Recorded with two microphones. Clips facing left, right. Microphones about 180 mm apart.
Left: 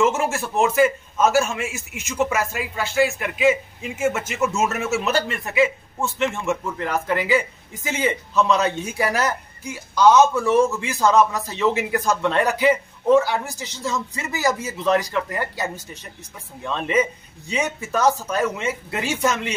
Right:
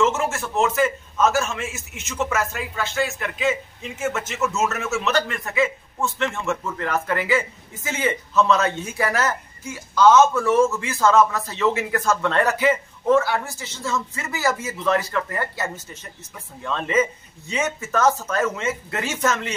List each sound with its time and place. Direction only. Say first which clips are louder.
0.6 s a man's voice: left 3 dB; 15° left (ahead or behind)